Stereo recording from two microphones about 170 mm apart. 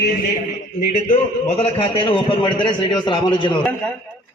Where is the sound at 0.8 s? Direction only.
55° left (ahead or behind).